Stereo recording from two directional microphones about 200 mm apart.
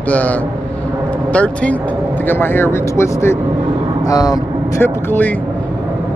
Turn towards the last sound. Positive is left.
turn(degrees=10)  # may be behind; listen again after turning